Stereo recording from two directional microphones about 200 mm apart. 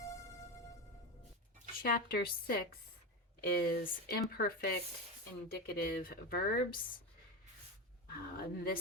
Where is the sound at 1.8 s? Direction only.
50° left (ahead or behind).